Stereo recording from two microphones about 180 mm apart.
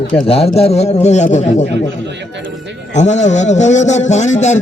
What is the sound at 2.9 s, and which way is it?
A man's voice, 40° left (ahead or behind).